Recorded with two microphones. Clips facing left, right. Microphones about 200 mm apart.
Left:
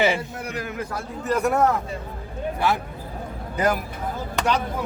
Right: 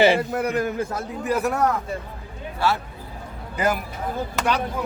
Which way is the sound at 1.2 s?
5° right (ahead or behind).